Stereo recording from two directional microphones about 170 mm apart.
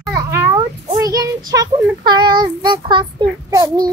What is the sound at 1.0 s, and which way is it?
Child singing, 20° right (ahead or behind).